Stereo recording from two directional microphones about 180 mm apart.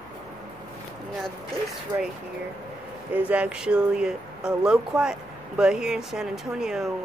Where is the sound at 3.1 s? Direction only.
10° right (ahead or behind).